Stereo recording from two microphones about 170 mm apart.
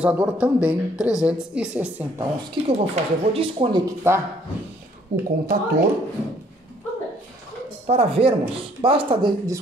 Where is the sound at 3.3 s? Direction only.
35° right (ahead or behind).